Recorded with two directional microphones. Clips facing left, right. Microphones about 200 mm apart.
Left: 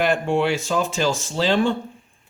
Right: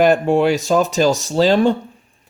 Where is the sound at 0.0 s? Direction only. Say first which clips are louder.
Right 6 dB; 40° right (ahead or behind).